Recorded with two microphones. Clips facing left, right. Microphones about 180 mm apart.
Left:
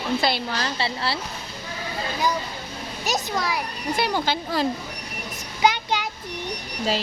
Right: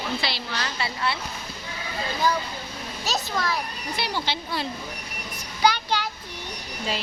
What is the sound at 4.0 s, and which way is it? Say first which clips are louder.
Speech: left 5 dB; 45° left (ahead or behind).